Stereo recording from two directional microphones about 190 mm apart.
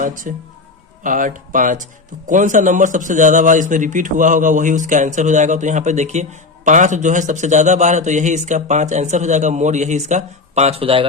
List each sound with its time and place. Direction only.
0.0 s speech: 45° right (ahead or behind); by 11.0 s 30° right (ahead or behind)